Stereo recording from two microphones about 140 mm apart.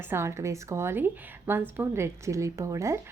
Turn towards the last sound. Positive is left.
turn(degrees=-20)  # may be behind; listen again after turning